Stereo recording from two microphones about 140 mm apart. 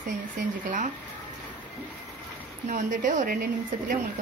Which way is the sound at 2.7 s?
70° right (ahead or behind).